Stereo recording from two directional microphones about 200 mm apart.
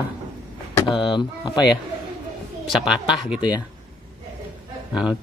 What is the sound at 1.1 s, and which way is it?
Speech, 20° left (ahead or behind).